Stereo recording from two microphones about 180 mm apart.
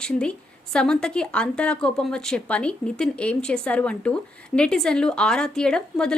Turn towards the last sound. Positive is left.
turn(degrees=5)  # may be behind; listen again after turning